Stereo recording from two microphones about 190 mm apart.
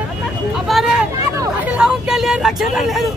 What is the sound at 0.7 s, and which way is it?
Vehicle, centre (ahead or behind).